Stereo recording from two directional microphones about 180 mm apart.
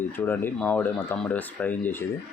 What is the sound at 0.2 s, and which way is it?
Speech, 10° left (ahead or behind).